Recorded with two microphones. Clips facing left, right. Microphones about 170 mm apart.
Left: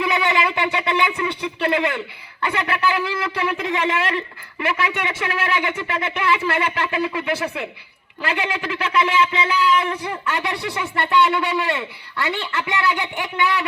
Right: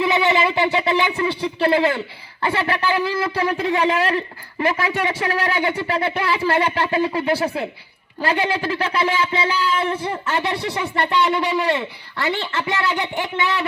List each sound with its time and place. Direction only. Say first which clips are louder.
0.0 s a woman's voice: right 3 dB; 25° right (ahead or behind)